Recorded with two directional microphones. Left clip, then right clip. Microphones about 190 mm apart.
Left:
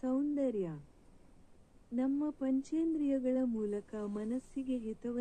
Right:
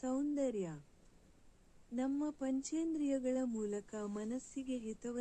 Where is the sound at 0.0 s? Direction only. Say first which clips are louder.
Left 3 dB; 15° right (ahead or behind).